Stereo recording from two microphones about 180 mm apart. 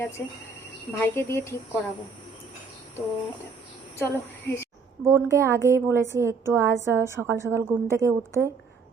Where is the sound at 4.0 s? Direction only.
15° left (ahead or behind).